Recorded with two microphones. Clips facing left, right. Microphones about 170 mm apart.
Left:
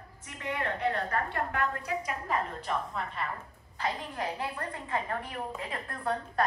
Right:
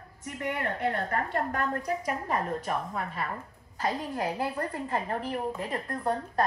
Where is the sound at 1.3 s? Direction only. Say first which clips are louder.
Right 2 dB; 45° right (ahead or behind).